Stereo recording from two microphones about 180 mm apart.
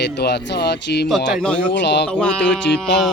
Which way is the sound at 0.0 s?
70° left (ahead or behind).